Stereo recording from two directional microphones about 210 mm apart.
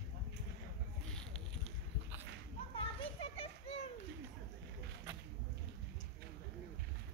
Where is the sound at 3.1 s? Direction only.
25° left (ahead or behind).